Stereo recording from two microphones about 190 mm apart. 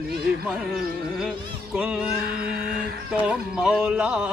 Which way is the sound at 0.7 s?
5° right (ahead or behind).